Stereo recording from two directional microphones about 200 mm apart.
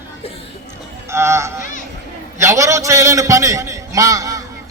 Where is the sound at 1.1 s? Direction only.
15° right (ahead or behind).